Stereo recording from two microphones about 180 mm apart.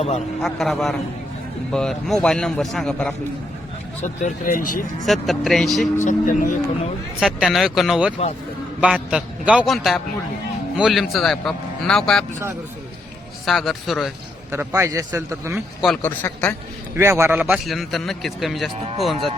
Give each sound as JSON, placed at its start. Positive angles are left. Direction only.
{"t": 0.4, "sound": "a man's voice", "side_deg": 0}
{"t": 4.0, "sound": "speech", "side_deg": 40}
{"t": 5.0, "sound": "a man's voice", "side_deg": 0}
{"t": 6.1, "sound": "speech", "side_deg": 45}
{"t": 7.2, "sound": "a man's voice", "side_deg": 0}
{"t": 13.4, "sound": "a man's voice", "side_deg": 0}
{"t": 14.5, "sound": "a man's voice", "side_deg": -15}
{"t": 15.5, "sound": "a man's voice", "side_deg": 0}
{"t": 16.0, "sound": "a man's voice", "side_deg": 10}
{"t": 17.0, "sound": "a man's voice", "side_deg": -15}
{"t": 17.7, "sound": "a man's voice", "side_deg": 0}